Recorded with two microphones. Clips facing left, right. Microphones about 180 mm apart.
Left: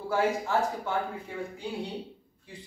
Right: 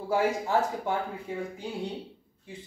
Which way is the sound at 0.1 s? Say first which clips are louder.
Right 1 dB; 15° right (ahead or behind).